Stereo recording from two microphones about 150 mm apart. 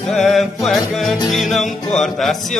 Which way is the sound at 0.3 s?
Centre (ahead or behind).